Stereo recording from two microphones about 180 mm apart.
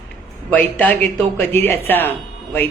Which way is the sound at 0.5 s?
10° left (ahead or behind).